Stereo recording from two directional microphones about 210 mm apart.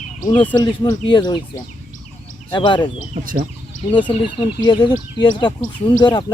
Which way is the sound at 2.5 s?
20° left (ahead or behind).